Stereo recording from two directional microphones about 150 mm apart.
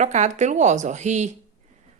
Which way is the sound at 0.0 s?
50° right (ahead or behind).